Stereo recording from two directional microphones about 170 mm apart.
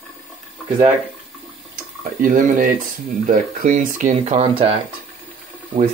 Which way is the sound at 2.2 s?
50° right (ahead or behind).